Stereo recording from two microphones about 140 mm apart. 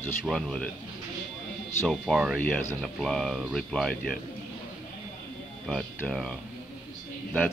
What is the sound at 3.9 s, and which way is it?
Speech, 90° left.